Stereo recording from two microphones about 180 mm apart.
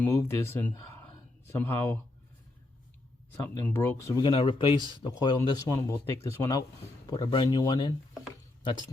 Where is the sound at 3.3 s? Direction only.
10° left (ahead or behind).